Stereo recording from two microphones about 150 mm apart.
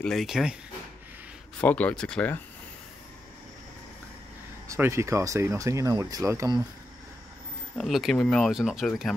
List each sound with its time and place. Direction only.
0.0 s speech: centre (ahead or behind)
1.6 s speech: 10° left (ahead or behind)
4.6 s speech: 15° right (ahead or behind)
7.7 s speech: centre (ahead or behind)